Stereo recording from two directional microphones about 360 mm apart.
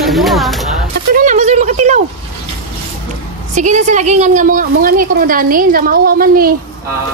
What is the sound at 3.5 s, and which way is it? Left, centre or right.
A woman's voice, centre.